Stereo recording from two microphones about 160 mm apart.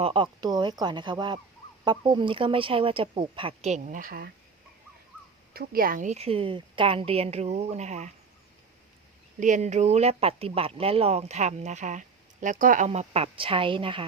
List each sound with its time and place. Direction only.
0.0 s speech: 30° right (ahead or behind); by 4.3 s 60° right (ahead or behind)
5.5 s speech: 65° right (ahead or behind); by 8.1 s 45° right (ahead or behind)
9.4 s speech: 50° right (ahead or behind); by 14.0 s 30° right (ahead or behind)